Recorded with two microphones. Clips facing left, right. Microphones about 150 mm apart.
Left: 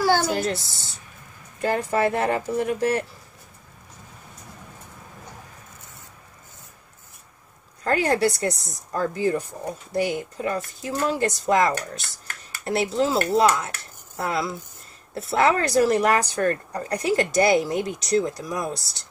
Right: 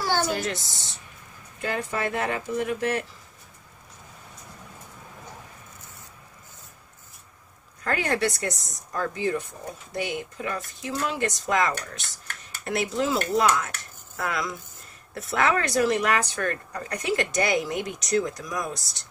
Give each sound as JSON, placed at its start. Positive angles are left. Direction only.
{"t": 0.3, "sound": "speech", "side_deg": 35}
{"t": 7.8, "sound": "speech", "side_deg": 30}